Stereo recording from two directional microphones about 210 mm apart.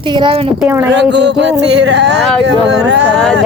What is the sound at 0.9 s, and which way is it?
Speech, 55° right (ahead or behind).